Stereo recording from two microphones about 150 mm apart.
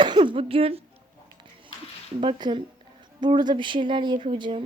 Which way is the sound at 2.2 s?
35° right (ahead or behind).